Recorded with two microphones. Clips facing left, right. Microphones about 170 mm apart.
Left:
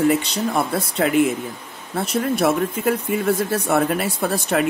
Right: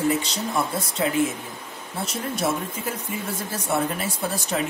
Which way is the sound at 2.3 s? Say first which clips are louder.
Left 6 dB; 65° left (ahead or behind).